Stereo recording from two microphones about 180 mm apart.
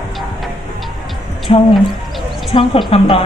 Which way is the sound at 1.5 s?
30° left (ahead or behind).